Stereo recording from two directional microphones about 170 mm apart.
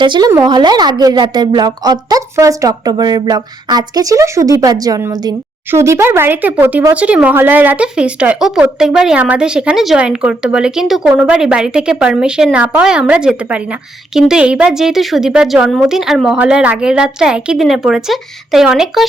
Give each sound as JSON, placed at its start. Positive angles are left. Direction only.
{"t": 0.0, "sound": "a woman's voice", "side_deg": -25}